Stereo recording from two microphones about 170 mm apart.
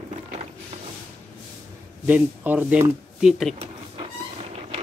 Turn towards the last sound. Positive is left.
turn(degrees=-35)  # may be behind; listen again after turning